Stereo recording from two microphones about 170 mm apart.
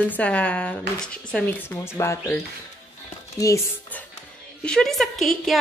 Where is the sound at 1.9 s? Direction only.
15° left (ahead or behind).